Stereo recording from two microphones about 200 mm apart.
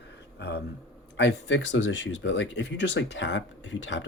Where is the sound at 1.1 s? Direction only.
65° left (ahead or behind).